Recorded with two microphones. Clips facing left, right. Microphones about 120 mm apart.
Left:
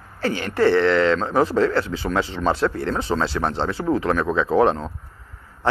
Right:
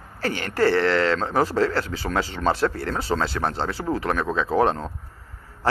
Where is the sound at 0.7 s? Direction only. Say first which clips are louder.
Left 4 dB; 40° right (ahead or behind).